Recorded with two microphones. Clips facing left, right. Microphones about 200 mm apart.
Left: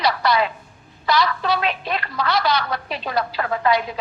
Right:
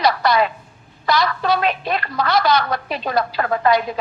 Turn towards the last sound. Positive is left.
turn(degrees=-45)  # may be behind; listen again after turning